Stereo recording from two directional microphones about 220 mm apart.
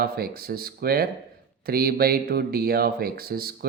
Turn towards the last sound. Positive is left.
turn(degrees=-45)  # may be behind; listen again after turning